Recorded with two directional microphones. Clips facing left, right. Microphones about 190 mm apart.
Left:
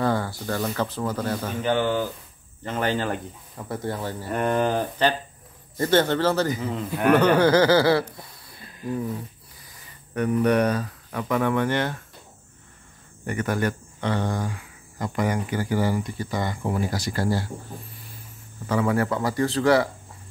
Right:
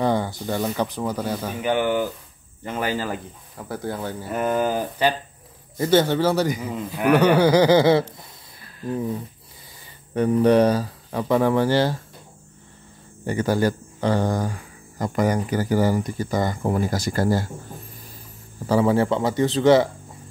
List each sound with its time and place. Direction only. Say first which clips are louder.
0.0 s a man's voice: right 2 dB; 20° right (ahead or behind)
10.1 s speech: right 4 dB; 30° right (ahead or behind)
13.2 s speech: right 4 dB; 30° right (ahead or behind); by 17.5 s 45° right (ahead or behind)
18.7 s speech: right 4 dB; 30° right (ahead or behind)